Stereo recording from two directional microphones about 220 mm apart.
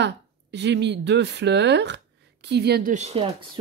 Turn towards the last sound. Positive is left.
turn(degrees=-25)  # may be behind; listen again after turning